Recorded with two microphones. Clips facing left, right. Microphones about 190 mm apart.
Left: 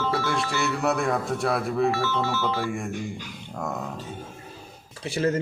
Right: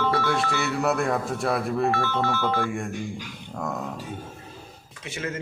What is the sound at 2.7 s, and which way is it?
Speech, centre (ahead or behind).